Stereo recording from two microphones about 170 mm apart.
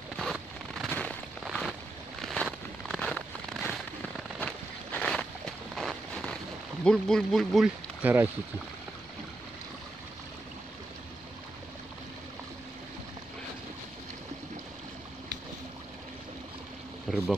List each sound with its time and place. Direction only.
0.2 s a sound: centre (ahead or behind)
6.8 s speech: 5° left (ahead or behind); by 8.3 s 10° right (ahead or behind)
17.1 s speech: centre (ahead or behind)